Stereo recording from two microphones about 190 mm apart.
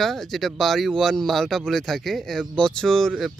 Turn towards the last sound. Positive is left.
turn(degrees=0)  # may be behind; listen again after turning